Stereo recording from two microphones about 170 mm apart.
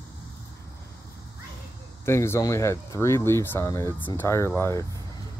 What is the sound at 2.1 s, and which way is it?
Speech, 15° left (ahead or behind).